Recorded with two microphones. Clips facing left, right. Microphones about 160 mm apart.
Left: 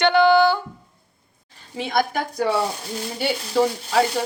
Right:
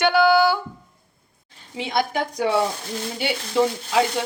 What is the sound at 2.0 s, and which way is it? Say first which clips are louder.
Speech: even; 15° right (ahead or behind).